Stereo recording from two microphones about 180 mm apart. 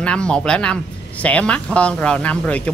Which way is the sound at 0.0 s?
5° left (ahead or behind).